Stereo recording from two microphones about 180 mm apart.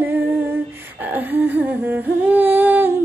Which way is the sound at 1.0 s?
10° right (ahead or behind).